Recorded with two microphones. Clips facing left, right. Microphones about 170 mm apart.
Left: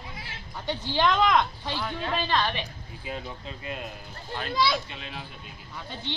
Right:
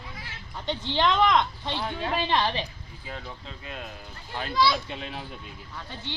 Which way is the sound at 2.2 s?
25° right (ahead or behind).